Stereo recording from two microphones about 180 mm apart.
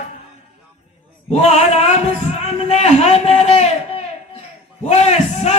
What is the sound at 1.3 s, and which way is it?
A man's voice, 35° left (ahead or behind).